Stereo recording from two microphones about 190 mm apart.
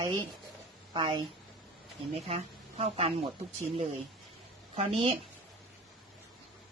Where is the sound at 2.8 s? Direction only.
30° right (ahead or behind).